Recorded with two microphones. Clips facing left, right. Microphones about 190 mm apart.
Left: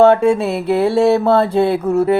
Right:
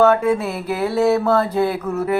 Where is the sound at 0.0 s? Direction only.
30° left (ahead or behind).